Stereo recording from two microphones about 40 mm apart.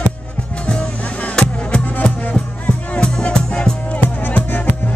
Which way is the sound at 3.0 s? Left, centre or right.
Left.